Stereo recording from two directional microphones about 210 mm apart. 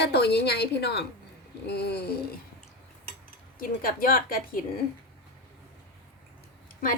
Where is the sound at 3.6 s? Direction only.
45° left (ahead or behind).